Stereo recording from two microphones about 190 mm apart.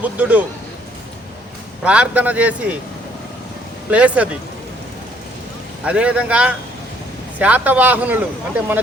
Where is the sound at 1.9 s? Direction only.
5° right (ahead or behind).